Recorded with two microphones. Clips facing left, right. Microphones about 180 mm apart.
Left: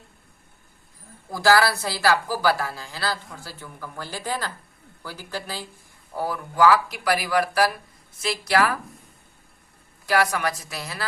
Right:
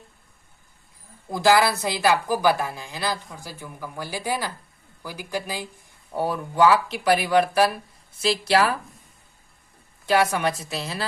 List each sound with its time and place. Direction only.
1.3 s speech: 20° right (ahead or behind)
6.1 s speech: 25° right (ahead or behind)
10.1 s speech: 25° right (ahead or behind)